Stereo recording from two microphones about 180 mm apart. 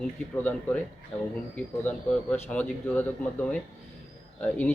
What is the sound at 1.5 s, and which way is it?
Speech, 10° left (ahead or behind).